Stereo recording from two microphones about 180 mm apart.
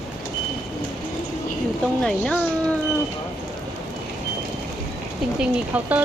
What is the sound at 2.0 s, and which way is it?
Speech, 5° left (ahead or behind).